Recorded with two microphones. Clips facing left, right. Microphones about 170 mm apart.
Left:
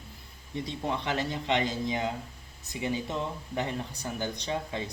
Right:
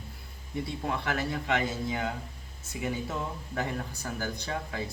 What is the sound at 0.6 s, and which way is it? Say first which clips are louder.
Speech: even; 20° left (ahead or behind).